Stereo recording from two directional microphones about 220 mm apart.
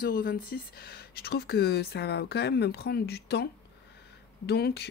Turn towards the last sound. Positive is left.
turn(degrees=45)  # may be behind; listen again after turning